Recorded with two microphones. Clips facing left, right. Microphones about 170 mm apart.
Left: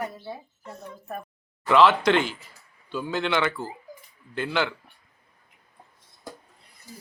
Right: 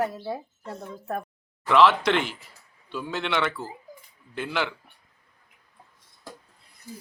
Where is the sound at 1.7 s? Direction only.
Centre (ahead or behind).